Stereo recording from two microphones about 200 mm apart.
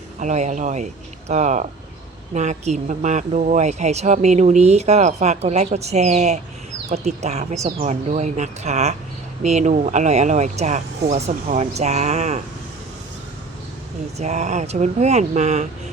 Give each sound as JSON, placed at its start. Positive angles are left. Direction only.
{"t": 0.2, "sound": "speech", "side_deg": -35}
{"t": 14.2, "sound": "speech", "side_deg": -35}